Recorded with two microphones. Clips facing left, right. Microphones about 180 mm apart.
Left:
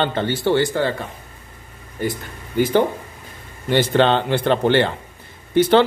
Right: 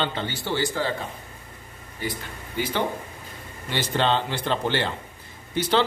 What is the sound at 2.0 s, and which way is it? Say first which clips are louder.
Speech: left 7 dB; 45° left (ahead or behind).